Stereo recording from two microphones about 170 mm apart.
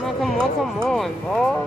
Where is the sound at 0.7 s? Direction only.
5° left (ahead or behind).